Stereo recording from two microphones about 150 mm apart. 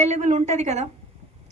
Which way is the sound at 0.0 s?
50° right (ahead or behind).